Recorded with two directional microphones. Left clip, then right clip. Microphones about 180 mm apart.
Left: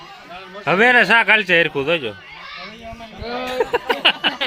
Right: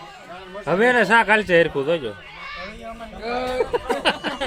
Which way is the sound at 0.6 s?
15° left (ahead or behind).